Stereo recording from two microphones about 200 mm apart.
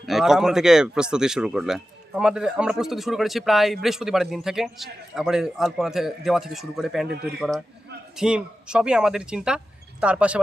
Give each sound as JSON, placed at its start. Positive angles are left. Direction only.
{"t": 0.0, "sound": "speech", "side_deg": 0}